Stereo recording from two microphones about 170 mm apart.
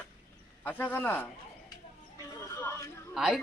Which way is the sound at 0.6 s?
10° left (ahead or behind).